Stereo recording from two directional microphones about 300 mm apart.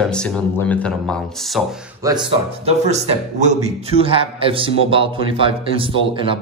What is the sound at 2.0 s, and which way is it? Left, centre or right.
A man's voice, centre.